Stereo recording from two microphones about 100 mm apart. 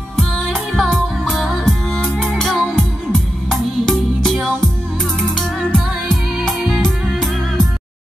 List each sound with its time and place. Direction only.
0.7 s music: centre (ahead or behind)